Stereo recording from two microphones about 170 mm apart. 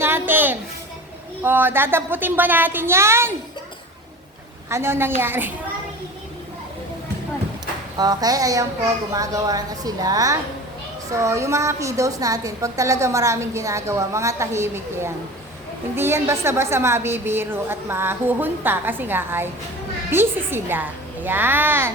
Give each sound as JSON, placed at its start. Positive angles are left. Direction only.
{"t": 0.0, "sound": "a sound", "side_deg": -15}
{"t": 1.4, "sound": "a woman's voice", "side_deg": -10}
{"t": 4.7, "sound": "a woman's voice", "side_deg": -15}
{"t": 7.9, "sound": "a woman's voice", "side_deg": -25}